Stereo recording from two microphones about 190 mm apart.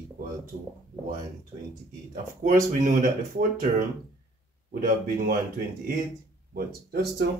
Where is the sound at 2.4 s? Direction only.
45° right (ahead or behind).